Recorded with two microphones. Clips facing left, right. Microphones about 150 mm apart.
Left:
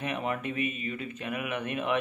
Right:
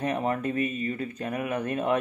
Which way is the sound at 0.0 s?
35° right (ahead or behind).